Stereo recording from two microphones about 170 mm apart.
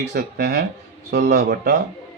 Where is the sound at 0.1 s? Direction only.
70° right (ahead or behind).